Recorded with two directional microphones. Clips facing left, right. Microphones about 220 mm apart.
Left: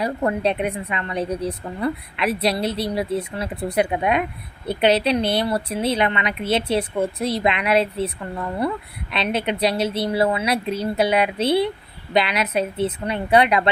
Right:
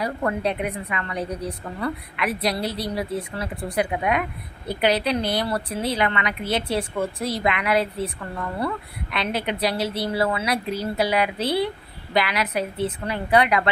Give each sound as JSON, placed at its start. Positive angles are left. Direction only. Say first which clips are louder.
{"t": 0.0, "sound": "a woman's voice", "louder": "left 3 dB", "side_deg": 25}